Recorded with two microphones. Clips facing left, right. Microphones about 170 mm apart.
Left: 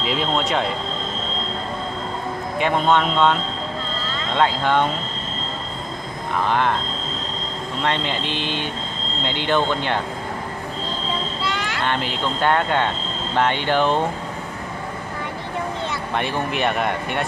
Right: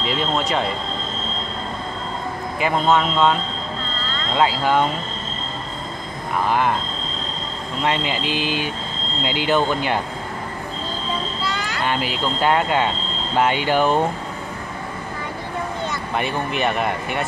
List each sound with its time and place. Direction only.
0.0 s speech: centre (ahead or behind)
2.6 s speech: centre (ahead or behind)
6.4 s speech: 5° right (ahead or behind)
7.8 s speech: 5° right (ahead or behind)
11.8 s speech: 5° right (ahead or behind)
16.2 s speech: centre (ahead or behind)